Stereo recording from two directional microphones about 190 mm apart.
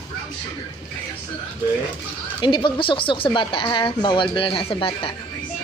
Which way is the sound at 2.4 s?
25° left (ahead or behind).